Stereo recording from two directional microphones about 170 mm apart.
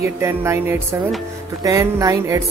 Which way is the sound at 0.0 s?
15° right (ahead or behind).